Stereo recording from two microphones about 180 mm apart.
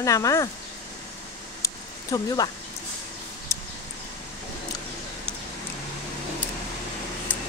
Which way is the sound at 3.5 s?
15° left (ahead or behind).